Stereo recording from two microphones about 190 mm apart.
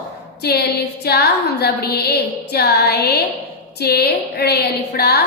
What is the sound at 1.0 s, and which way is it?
A woman's voice, 60° left (ahead or behind).